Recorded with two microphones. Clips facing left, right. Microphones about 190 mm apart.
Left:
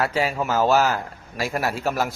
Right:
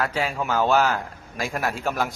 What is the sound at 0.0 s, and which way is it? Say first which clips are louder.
A man's voice: left 3 dB; 10° left (ahead or behind).